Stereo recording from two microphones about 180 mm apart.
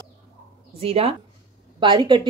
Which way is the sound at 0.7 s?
30° right (ahead or behind).